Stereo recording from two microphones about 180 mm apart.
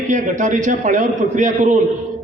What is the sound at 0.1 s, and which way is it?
A man's voice, 45° right (ahead or behind).